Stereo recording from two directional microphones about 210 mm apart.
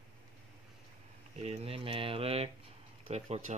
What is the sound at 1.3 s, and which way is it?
Speech, 30° right (ahead or behind).